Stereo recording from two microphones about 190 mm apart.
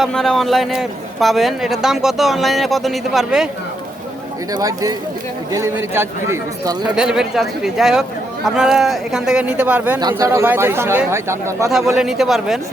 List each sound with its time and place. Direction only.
0.0 s a man's voice: 5° left (ahead or behind)
4.5 s a man's voice: 20° right (ahead or behind)
10.0 s speech: 20° right (ahead or behind)
11.9 s a man's voice: centre (ahead or behind)